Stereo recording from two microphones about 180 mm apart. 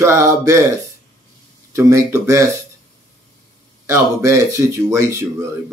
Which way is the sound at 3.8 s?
15° right (ahead or behind).